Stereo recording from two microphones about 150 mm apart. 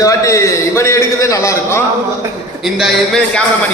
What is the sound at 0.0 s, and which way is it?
A man's voice, 20° left (ahead or behind).